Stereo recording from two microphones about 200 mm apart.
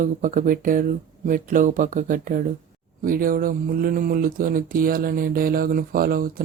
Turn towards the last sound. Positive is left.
turn(degrees=-45)  # may be behind; listen again after turning